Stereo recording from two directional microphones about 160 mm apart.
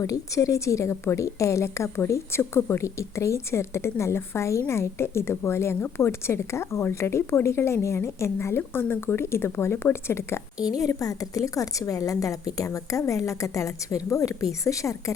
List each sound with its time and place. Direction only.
0.0 s a woman's voice: 20° left (ahead or behind)